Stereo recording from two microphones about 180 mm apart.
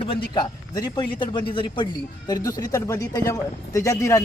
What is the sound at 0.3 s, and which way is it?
A man's voice, 20° left (ahead or behind).